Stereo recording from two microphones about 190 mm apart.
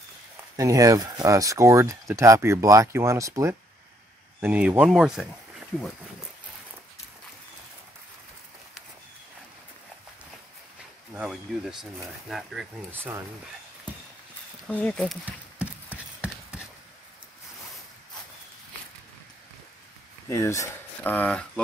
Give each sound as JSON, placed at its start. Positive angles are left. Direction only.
{"t": 0.6, "sound": "speech", "side_deg": -15}
{"t": 11.1, "sound": "speech", "side_deg": -5}
{"t": 14.7, "sound": "speech", "side_deg": 5}
{"t": 15.2, "sound": "clip-clop", "side_deg": -5}
{"t": 20.2, "sound": "speech", "side_deg": 15}